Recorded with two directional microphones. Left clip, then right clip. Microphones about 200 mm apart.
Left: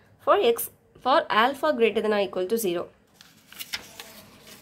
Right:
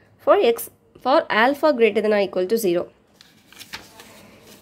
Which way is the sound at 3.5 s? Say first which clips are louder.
Left 2 dB; 15° left (ahead or behind).